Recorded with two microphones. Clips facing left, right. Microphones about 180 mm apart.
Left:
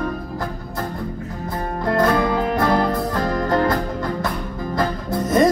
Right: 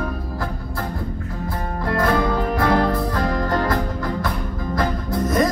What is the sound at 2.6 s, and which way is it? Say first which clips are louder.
Music: right 2 dB; 25° left (ahead or behind).